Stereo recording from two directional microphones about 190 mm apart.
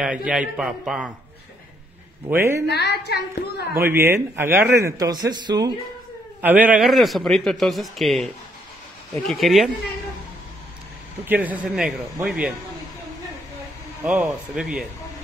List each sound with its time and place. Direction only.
0.0 s a man's voice: 5° right (ahead or behind)
2.2 s a man's voice: 15° right (ahead or behind)
2.7 s speech: 60° left (ahead or behind)
3.7 s a man's voice: 10° right (ahead or behind)
6.4 s a man's voice: 10° right (ahead or behind)
11.2 s a man's voice: 10° right (ahead or behind)
14.0 s a man's voice: 5° right (ahead or behind)